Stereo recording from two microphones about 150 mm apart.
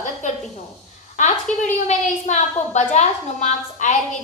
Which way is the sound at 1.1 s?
55° left (ahead or behind).